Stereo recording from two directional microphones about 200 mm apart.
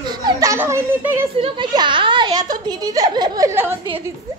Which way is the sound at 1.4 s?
25° right (ahead or behind).